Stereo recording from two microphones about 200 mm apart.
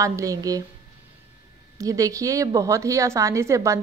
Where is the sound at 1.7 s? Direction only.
15° right (ahead or behind).